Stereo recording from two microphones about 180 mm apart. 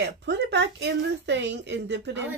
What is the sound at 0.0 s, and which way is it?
Speech, 70° right (ahead or behind).